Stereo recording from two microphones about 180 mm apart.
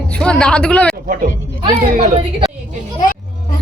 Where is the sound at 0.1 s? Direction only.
5° left (ahead or behind).